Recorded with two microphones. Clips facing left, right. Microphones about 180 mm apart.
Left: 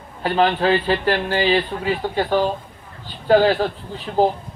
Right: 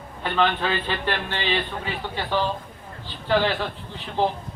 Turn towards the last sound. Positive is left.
turn(degrees=45)  # may be behind; listen again after turning